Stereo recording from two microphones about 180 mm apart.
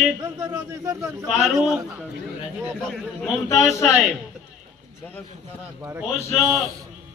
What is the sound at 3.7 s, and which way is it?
Speech, 15° left (ahead or behind).